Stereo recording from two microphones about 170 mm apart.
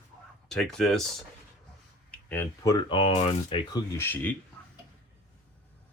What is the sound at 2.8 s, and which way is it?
Speech, 35° left (ahead or behind).